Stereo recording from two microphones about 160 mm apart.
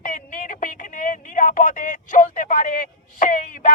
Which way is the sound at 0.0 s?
55° left (ahead or behind).